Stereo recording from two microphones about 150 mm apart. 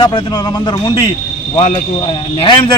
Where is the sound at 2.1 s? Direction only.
35° left (ahead or behind).